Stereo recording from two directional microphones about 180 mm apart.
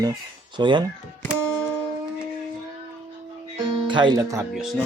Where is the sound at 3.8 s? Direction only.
25° right (ahead or behind).